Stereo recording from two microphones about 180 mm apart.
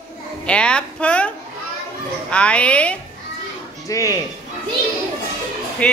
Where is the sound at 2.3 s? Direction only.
5° left (ahead or behind).